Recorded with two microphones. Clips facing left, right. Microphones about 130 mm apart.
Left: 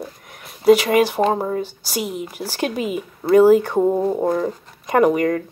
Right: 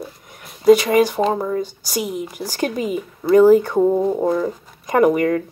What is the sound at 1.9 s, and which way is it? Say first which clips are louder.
Speech: right 1 dB; centre (ahead or behind).